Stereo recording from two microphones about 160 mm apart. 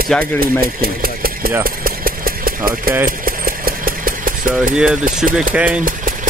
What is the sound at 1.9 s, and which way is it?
Engine, 65° right (ahead or behind).